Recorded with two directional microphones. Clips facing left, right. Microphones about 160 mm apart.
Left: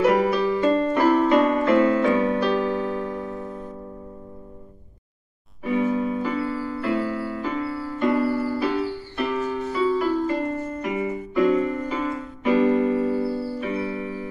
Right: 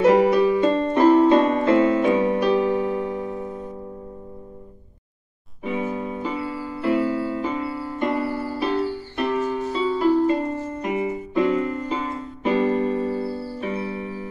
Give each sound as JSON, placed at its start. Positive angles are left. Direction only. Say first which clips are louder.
{"t": 0.0, "sound": "music", "louder": "right 4 dB", "side_deg": -25}
{"t": 5.6, "sound": "piano", "louder": "left 4 dB", "side_deg": -20}
{"t": 11.9, "sound": "keyboard", "louder": "left 1 dB", "side_deg": -25}
{"t": 13.6, "sound": "music", "louder": "left 1 dB", "side_deg": -35}